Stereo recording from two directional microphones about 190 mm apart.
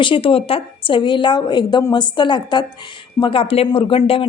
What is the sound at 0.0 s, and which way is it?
A woman's voice, 25° left (ahead or behind).